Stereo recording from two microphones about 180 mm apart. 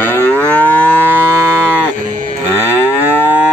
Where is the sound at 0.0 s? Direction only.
10° left (ahead or behind).